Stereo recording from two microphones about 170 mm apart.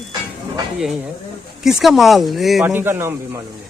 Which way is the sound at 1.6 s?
Centre (ahead or behind).